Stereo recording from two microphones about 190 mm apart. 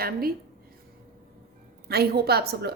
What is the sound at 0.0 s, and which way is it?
Speech, 50° right (ahead or behind).